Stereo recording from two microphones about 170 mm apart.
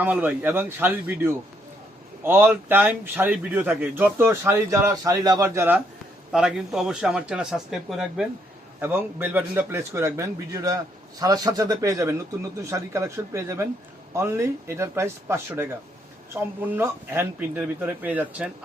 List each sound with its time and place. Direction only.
0.0 s a man's voice: 10° right (ahead or behind)